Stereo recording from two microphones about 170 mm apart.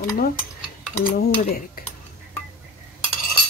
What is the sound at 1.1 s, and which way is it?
Speech, 60° left (ahead or behind).